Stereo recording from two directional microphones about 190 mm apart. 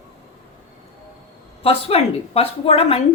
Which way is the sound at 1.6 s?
30° left (ahead or behind).